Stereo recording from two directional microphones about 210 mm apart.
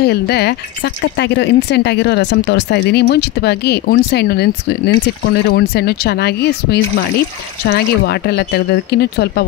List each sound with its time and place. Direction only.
0.0 s speech: 50° left (ahead or behind)